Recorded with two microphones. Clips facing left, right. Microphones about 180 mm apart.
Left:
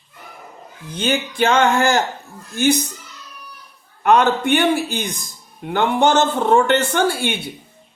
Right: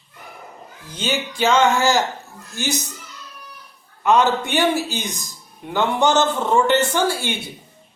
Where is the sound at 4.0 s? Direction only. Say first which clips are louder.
Left 2 dB; 60° left (ahead or behind).